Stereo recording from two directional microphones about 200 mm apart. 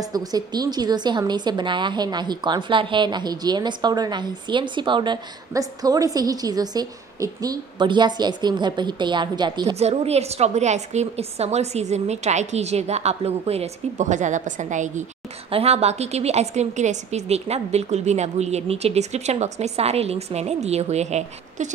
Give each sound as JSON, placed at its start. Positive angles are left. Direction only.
{"t": 0.0, "sound": "a woman's voice", "side_deg": -20}